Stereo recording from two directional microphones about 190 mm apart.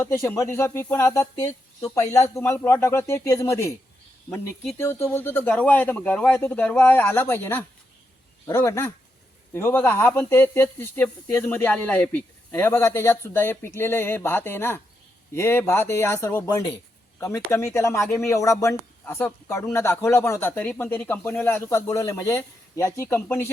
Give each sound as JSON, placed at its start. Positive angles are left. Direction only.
{"t": 0.0, "sound": "speech", "side_deg": 15}
{"t": 4.8, "sound": "speech", "side_deg": 15}